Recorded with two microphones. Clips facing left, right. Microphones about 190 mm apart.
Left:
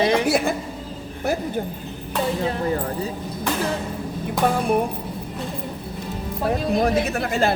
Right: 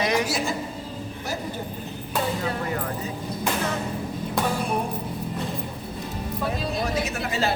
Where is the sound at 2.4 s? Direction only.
30° left (ahead or behind).